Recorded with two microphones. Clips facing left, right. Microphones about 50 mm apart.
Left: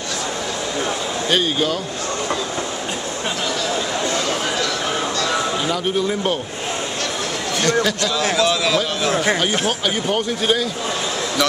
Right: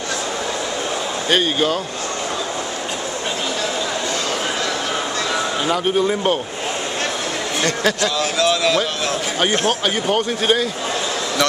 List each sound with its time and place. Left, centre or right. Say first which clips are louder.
1.3 s a man's voice: right 2 dB; centre
5.7 s a man's voice: right 2 dB; centre
7.6 s a man's voice: left 1 dB; centre
8.2 s speech: left 2 dB; centre
9.8 s a man's voice: right 1 dB; centre